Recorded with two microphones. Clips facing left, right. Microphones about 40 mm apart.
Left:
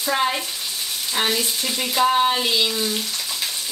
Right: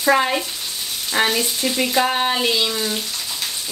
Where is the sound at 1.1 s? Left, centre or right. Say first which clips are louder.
Right 3 dB; right.